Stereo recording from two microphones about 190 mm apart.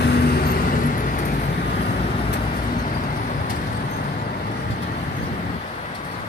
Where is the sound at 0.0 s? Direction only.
55° left (ahead or behind).